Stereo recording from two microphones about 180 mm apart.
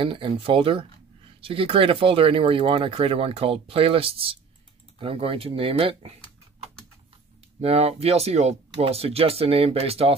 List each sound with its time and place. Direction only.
0.0 s speech: 30° right (ahead or behind)
7.6 s speech: 35° right (ahead or behind)